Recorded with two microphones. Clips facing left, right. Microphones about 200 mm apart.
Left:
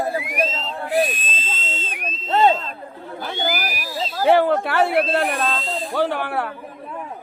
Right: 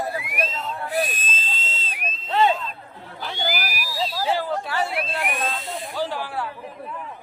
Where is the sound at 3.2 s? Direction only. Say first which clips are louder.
Left 3 dB; 50° left (ahead or behind).